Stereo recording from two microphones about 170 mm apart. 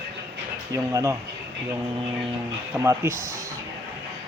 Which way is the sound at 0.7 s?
20° right (ahead or behind).